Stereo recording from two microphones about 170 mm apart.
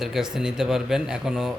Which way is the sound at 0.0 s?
Centre (ahead or behind).